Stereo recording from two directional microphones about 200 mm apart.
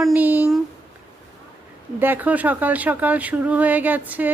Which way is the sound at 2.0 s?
10° right (ahead or behind).